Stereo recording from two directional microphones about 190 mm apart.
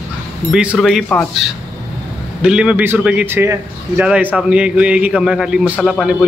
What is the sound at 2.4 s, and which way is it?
A man's voice, 5° right (ahead or behind).